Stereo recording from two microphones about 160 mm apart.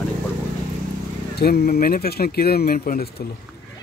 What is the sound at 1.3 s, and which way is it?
Speech, 75° left (ahead or behind).